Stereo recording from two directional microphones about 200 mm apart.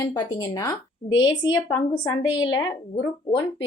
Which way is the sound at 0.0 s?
20° left (ahead or behind).